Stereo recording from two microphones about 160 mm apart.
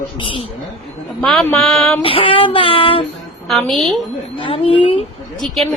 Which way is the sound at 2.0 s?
35° left (ahead or behind).